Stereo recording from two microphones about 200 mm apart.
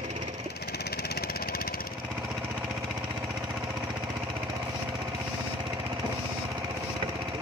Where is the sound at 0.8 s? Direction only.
50° left (ahead or behind).